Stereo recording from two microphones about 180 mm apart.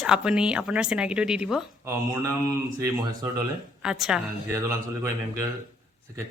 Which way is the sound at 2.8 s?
20° right (ahead or behind).